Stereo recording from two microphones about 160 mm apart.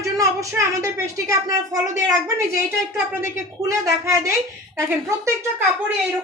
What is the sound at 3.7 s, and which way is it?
A man's voice, 20° right (ahead or behind).